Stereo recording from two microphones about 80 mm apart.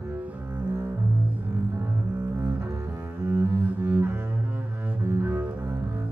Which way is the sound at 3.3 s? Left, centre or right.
Right.